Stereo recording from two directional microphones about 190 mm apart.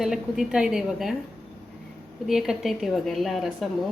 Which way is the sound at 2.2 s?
Centre (ahead or behind).